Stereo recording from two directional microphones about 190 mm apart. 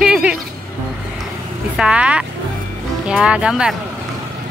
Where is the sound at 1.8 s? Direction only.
5° right (ahead or behind).